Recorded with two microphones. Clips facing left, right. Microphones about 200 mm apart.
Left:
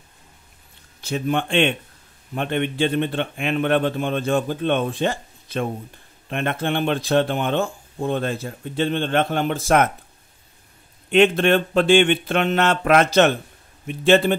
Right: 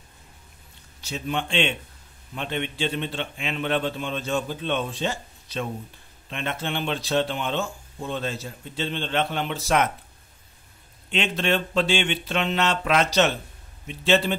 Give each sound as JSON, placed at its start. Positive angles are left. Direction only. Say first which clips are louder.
{"t": 1.0, "sound": "speech", "louder": "left 6 dB", "side_deg": 55}
{"t": 11.1, "sound": "speech", "louder": "left 9 dB", "side_deg": 55}